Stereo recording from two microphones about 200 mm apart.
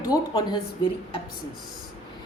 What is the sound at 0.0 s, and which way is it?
Speech, 20° left (ahead or behind).